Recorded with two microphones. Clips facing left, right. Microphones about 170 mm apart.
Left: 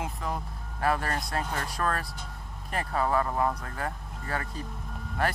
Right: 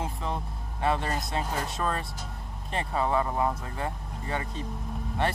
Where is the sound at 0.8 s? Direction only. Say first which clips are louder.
Even; 20° right (ahead or behind).